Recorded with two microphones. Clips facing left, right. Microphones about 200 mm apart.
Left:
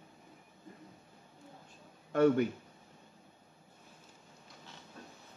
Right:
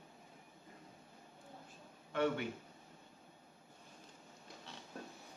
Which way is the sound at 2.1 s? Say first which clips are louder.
Left 9 dB; 45° left (ahead or behind).